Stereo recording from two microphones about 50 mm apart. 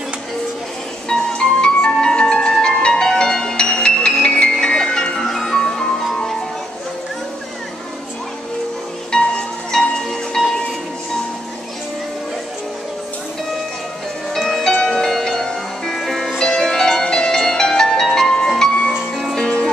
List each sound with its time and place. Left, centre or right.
1.0 s music: centre
9.1 s wind chime: centre
14.3 s music: centre